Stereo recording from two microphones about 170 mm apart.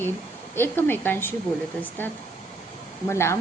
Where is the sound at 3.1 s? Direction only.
15° left (ahead or behind).